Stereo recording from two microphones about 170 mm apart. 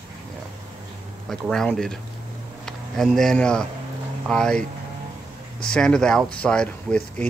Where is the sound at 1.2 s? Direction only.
Centre (ahead or behind).